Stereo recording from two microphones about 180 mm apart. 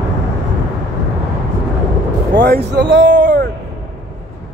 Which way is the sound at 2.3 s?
65° right (ahead or behind).